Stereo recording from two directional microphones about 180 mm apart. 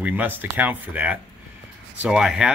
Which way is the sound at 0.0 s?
10° right (ahead or behind).